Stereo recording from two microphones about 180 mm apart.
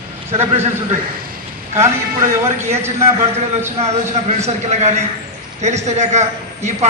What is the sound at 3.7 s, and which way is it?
A man's voice, 35° right (ahead or behind).